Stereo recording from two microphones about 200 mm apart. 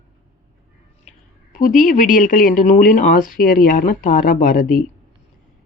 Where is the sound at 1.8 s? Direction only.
40° left (ahead or behind).